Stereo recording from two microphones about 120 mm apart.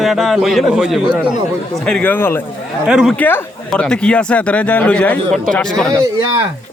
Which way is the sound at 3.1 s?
15° left (ahead or behind).